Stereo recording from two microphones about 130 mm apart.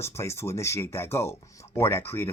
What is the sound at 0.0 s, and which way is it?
Speech, 20° left (ahead or behind).